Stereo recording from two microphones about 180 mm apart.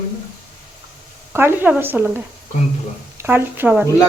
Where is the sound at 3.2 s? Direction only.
10° right (ahead or behind).